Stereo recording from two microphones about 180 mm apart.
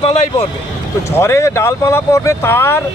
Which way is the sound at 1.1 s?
15° left (ahead or behind).